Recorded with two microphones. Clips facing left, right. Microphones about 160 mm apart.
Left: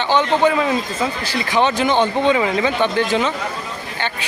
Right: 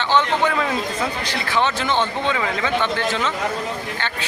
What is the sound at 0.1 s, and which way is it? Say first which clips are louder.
Speech: left 3 dB; 15° left (ahead or behind).